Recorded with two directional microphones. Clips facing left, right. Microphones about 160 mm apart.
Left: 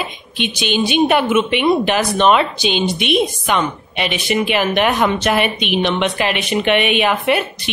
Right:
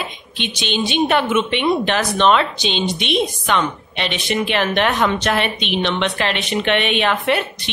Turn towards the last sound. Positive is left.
turn(degrees=5)  # may be behind; listen again after turning